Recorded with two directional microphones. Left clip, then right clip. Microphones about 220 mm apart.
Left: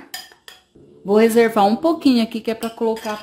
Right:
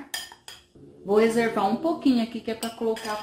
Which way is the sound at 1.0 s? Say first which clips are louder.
Left 7 dB; 55° left (ahead or behind).